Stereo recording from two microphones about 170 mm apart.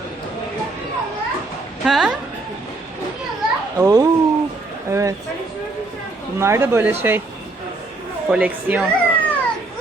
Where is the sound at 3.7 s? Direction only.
20° right (ahead or behind).